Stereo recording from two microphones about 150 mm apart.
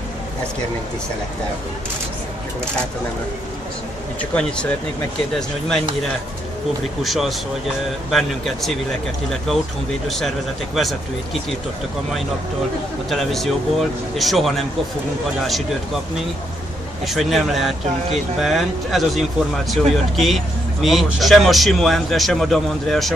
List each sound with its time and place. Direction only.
4.2 s a man's voice: 5° left (ahead or behind)
7.0 s a man's voice: centre (ahead or behind)
10.0 s a man's voice: centre (ahead or behind)
13.1 s a man's voice: centre (ahead or behind)
17.0 s a man's voice: centre (ahead or behind)